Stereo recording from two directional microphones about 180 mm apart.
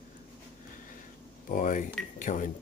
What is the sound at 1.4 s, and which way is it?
Speech, 45° left (ahead or behind).